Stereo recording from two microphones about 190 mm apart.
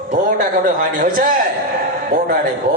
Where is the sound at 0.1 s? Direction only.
45° right (ahead or behind).